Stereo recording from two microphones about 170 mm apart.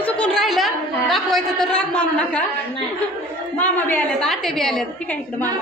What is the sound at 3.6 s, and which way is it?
A woman's voice, 10° left (ahead or behind).